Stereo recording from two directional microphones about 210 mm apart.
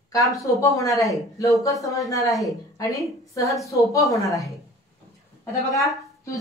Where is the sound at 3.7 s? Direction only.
15° left (ahead or behind).